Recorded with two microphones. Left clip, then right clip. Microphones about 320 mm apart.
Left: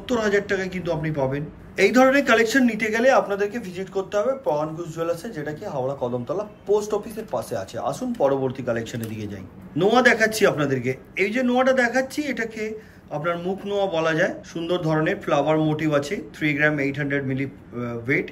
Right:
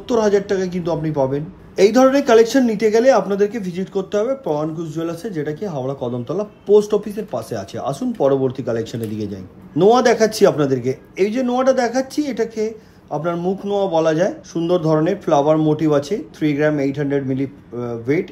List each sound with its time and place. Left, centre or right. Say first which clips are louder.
0.1 s speech: right 5 dB; centre